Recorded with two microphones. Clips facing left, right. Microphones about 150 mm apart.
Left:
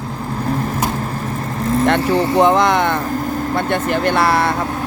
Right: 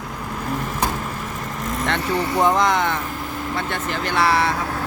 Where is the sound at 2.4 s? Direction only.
65° left (ahead or behind).